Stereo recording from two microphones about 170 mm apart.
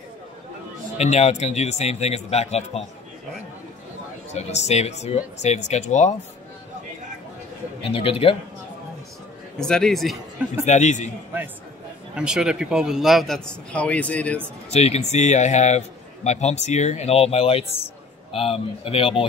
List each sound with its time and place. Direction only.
0.9 s speech: 40° left (ahead or behind)
4.3 s speech: 40° left (ahead or behind)
7.8 s speech: 35° left (ahead or behind)
9.6 s speech: 5° left (ahead or behind)
10.6 s a man's voice: 45° left (ahead or behind)
12.2 s speech: 5° right (ahead or behind)
14.7 s speech: 40° left (ahead or behind)